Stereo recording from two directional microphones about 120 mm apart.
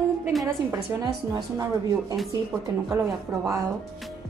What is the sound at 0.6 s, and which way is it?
A woman's voice, 30° right (ahead or behind).